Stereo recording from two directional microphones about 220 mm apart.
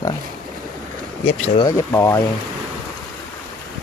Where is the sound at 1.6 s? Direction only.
10° left (ahead or behind).